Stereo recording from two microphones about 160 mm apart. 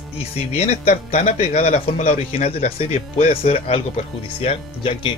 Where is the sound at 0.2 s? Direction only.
40° left (ahead or behind).